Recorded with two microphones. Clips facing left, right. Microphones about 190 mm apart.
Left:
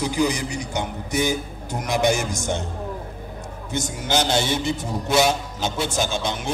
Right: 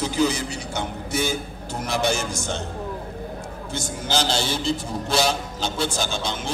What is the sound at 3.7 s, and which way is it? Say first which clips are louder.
Speech: left 3 dB; 20° left (ahead or behind).